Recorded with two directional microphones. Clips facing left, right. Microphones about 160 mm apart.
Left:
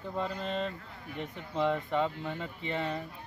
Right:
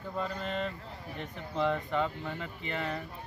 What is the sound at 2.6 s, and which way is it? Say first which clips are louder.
Speech: left 2 dB; 30° left (ahead or behind).